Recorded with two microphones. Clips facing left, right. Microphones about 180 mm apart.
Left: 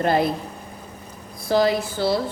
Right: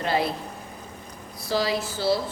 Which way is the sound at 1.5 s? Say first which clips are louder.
Left 6 dB; 55° left (ahead or behind).